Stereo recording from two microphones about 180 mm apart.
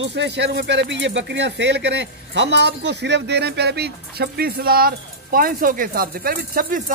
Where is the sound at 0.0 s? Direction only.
75° right (ahead or behind).